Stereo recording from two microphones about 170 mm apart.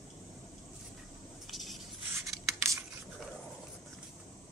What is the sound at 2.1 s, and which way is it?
Writing, 15° right (ahead or behind).